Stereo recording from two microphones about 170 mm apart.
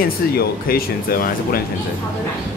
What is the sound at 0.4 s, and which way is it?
Speech, 60° left (ahead or behind).